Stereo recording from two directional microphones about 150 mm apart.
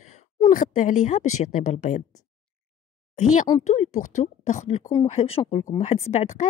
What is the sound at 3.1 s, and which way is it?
A woman's voice, 55° left (ahead or behind).